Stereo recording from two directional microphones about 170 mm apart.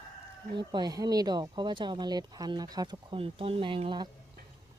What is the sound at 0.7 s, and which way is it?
Speech, 25° right (ahead or behind).